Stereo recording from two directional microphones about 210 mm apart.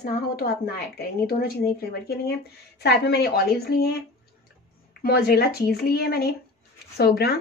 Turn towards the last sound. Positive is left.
turn(degrees=50)  # may be behind; listen again after turning